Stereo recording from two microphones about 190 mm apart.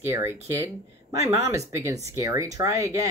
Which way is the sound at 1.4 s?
15° right (ahead or behind).